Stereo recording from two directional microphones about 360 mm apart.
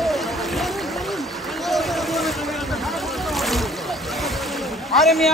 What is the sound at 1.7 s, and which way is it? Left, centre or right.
Boat, centre.